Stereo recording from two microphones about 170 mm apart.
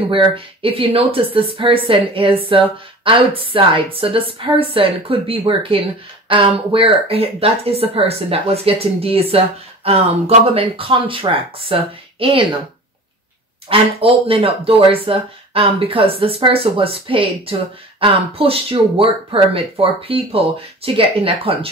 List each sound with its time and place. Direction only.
0.1 s speech: 35° right (ahead or behind)
13.7 s speech: 35° right (ahead or behind)